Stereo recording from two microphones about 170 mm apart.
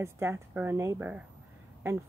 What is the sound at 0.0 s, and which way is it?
A woman's voice, 15° right (ahead or behind).